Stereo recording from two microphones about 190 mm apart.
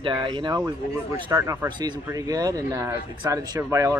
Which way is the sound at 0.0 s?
25° right (ahead or behind).